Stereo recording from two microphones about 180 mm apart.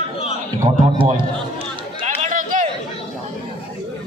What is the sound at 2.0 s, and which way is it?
Run, 45° right (ahead or behind).